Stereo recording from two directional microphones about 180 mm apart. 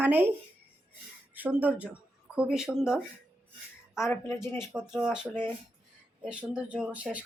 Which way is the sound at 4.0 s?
15° left (ahead or behind).